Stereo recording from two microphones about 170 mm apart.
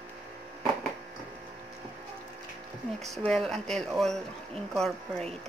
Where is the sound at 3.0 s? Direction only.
Centre (ahead or behind).